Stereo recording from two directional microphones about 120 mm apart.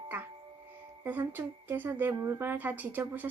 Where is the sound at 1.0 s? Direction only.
15° right (ahead or behind).